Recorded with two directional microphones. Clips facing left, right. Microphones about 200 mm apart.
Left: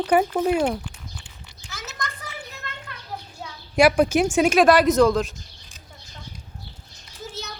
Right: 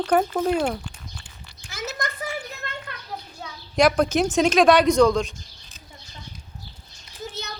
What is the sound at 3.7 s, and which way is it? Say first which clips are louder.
Speech: left 2 dB; 5° left (ahead or behind).